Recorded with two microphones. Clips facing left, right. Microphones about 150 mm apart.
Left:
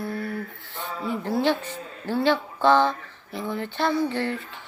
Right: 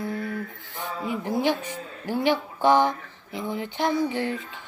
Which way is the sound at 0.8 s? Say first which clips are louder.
Even; 15° right (ahead or behind).